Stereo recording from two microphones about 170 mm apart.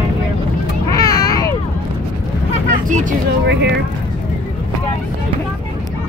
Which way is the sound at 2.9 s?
50° right (ahead or behind).